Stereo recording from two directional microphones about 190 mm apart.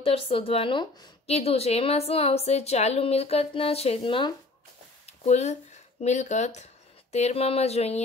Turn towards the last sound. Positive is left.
turn(degrees=35)  # may be behind; listen again after turning